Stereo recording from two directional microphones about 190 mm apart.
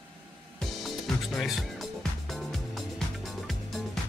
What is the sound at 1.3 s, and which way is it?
Speech, centre (ahead or behind).